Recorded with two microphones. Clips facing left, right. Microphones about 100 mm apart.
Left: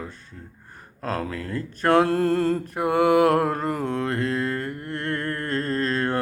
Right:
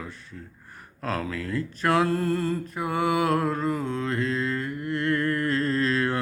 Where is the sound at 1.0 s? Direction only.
35° left (ahead or behind).